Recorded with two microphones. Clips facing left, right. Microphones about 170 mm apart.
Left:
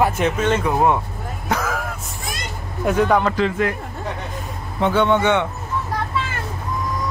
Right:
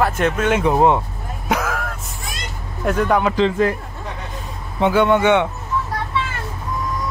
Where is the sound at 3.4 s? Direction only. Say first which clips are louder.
Right 3 dB; 30° right (ahead or behind).